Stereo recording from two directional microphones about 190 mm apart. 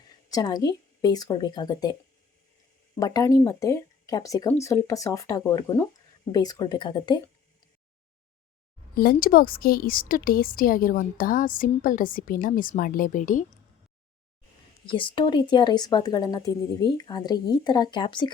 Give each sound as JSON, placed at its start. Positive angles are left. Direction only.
{"t": 0.3, "sound": "speech", "side_deg": 20}
{"t": 3.0, "sound": "speech", "side_deg": 20}
{"t": 9.0, "sound": "a woman's voice", "side_deg": 50}
{"t": 14.8, "sound": "speech", "side_deg": 25}